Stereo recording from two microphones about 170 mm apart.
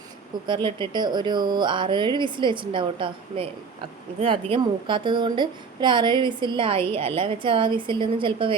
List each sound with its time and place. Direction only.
0.4 s speech: 30° right (ahead or behind)